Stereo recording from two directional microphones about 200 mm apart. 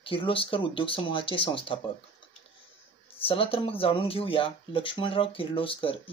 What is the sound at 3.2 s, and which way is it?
Speech, 25° left (ahead or behind).